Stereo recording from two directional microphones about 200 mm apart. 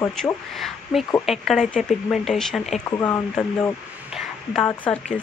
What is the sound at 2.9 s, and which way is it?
Speech, 15° left (ahead or behind).